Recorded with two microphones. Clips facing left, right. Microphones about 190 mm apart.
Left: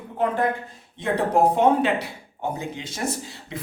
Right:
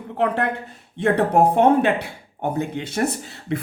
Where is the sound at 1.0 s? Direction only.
60° right (ahead or behind).